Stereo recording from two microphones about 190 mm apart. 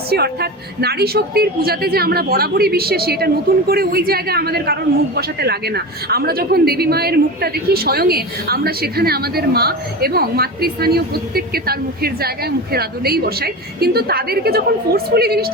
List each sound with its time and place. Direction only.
0.1 s a woman's voice: 55° right (ahead or behind)